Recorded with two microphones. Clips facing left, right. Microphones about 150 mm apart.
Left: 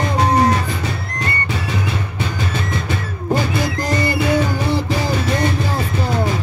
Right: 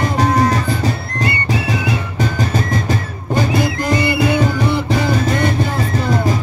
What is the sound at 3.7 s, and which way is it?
Music, 40° left (ahead or behind).